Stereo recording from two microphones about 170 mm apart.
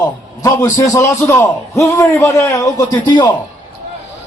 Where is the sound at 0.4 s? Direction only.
20° left (ahead or behind).